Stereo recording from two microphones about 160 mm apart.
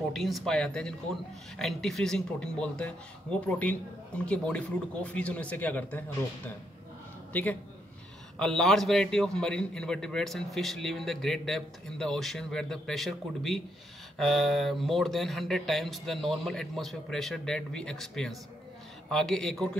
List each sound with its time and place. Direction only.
0.1 s a man's voice: centre (ahead or behind)
8.4 s a man's voice: 5° left (ahead or behind)